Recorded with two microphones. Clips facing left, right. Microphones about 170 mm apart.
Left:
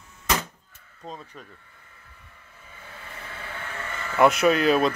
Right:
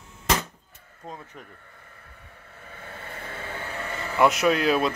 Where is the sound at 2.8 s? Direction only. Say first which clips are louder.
Right 3 dB; 50° right (ahead or behind).